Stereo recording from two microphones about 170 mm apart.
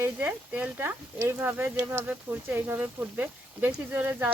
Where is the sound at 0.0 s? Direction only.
10° right (ahead or behind).